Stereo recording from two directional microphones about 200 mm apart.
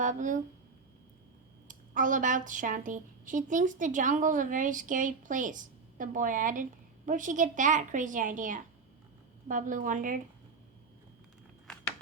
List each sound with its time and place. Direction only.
0.0 s speech: 40° right (ahead or behind)
1.6 s a woman's voice: 40° right (ahead or behind)
11.7 s a sound: 5° left (ahead or behind)